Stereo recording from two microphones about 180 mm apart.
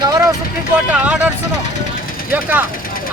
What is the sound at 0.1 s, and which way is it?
Vehicle, 15° right (ahead or behind).